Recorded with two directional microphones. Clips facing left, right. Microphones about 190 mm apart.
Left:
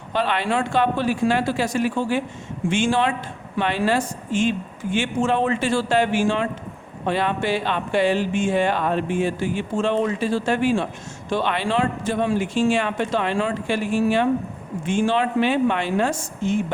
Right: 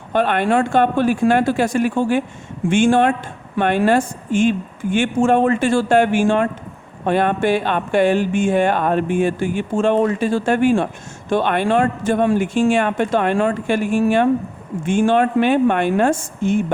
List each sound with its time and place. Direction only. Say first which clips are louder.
0.1 s speech: right 6 dB; 50° right (ahead or behind)